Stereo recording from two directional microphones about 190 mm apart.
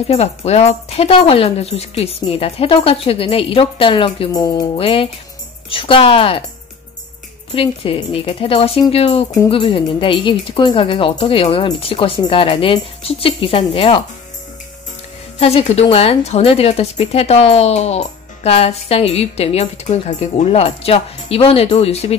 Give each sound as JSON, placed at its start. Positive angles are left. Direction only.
{"t": 0.1, "sound": "speech", "side_deg": 35}
{"t": 7.5, "sound": "speech", "side_deg": 30}
{"t": 15.3, "sound": "speech", "side_deg": 35}